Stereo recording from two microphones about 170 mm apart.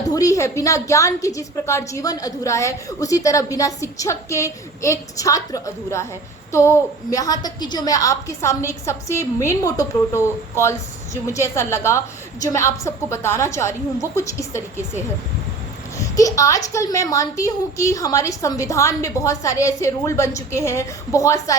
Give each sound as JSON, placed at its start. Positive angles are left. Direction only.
{"t": 0.0, "sound": "a woman's voice", "side_deg": 20}
{"t": 16.0, "sound": "a woman's voice", "side_deg": 20}